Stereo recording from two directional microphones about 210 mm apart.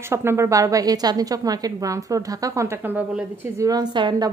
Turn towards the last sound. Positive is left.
turn(degrees=-20)  # may be behind; listen again after turning